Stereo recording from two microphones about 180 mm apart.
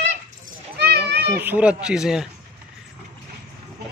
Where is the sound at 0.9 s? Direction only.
60° right (ahead or behind).